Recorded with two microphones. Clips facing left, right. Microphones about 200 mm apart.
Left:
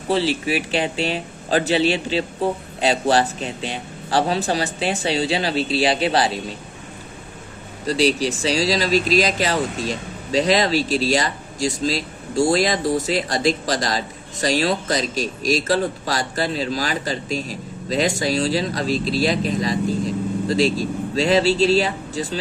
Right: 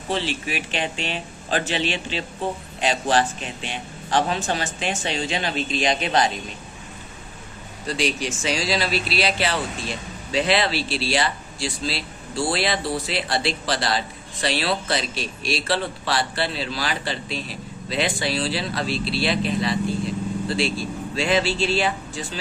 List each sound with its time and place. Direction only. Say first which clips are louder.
0.1 s speech: left 6 dB; 35° left (ahead or behind)
7.9 s speech: left 6 dB; 35° left (ahead or behind)